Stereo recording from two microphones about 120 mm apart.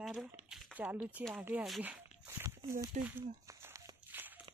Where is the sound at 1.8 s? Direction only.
15° right (ahead or behind).